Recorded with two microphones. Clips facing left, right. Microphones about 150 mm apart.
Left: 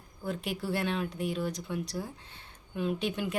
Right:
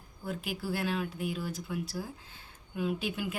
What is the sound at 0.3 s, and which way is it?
A woman's voice, 5° right (ahead or behind).